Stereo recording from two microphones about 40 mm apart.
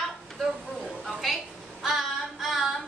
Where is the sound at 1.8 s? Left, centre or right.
Centre.